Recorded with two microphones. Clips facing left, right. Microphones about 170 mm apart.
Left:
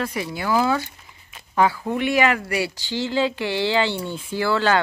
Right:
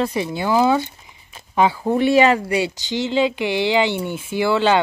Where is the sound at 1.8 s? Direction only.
30° right (ahead or behind).